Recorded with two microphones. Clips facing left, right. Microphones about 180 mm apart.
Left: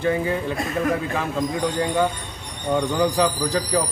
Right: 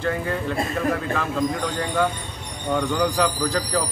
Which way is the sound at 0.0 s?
15° left (ahead or behind).